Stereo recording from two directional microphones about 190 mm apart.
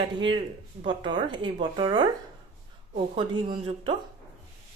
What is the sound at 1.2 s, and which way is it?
Speech, 25° right (ahead or behind).